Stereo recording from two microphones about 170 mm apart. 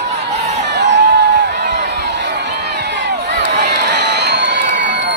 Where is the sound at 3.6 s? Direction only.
70° right (ahead or behind); by 5.0 s 90° right.